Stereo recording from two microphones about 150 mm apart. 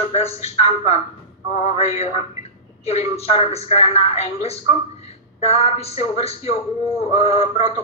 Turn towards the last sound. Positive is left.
turn(degrees=45)  # may be behind; listen again after turning